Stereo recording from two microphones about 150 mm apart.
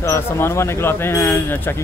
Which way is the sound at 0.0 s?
15° left (ahead or behind).